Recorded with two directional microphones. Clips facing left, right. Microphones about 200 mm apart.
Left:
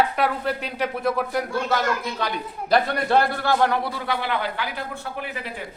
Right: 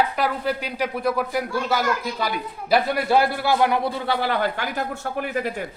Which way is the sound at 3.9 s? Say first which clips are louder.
Right 3 dB; 35° right (ahead or behind).